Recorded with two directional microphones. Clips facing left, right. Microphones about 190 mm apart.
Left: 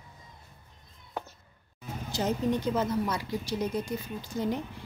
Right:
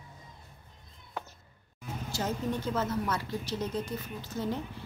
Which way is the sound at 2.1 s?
20° left (ahead or behind).